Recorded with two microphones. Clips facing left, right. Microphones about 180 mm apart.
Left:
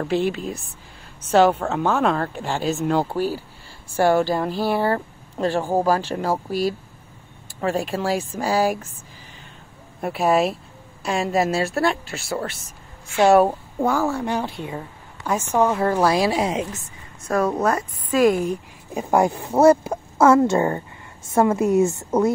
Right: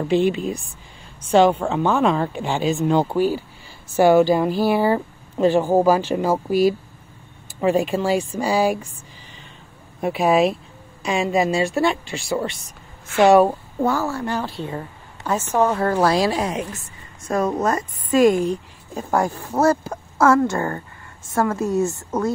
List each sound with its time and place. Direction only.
0.1 s speech: centre (ahead or behind)
9.9 s speech: centre (ahead or behind)
14.2 s a woman's voice: 20° left (ahead or behind)
17.6 s speech: 5° left (ahead or behind)